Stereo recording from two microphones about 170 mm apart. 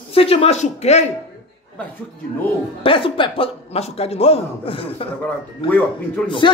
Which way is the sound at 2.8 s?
30° left (ahead or behind).